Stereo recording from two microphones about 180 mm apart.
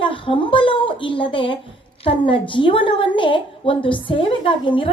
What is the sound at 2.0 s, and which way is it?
A woman's voice, 30° left (ahead or behind).